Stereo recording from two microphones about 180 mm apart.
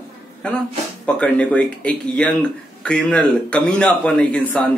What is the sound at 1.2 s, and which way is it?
Speech, 5° left (ahead or behind).